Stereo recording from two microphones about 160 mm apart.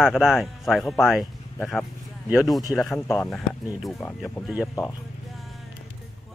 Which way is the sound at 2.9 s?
15° left (ahead or behind).